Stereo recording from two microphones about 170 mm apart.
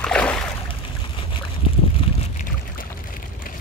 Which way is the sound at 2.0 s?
30° left (ahead or behind).